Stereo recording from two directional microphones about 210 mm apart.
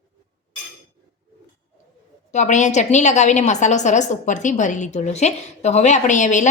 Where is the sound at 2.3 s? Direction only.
35° left (ahead or behind).